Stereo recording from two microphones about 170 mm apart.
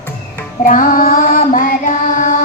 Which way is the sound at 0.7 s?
50° left (ahead or behind).